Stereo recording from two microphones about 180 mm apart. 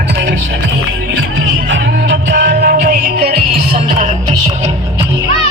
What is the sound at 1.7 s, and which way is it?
Music, 60° right (ahead or behind).